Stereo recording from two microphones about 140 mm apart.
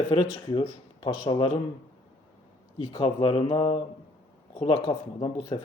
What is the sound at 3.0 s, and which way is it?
Speech, 40° left (ahead or behind).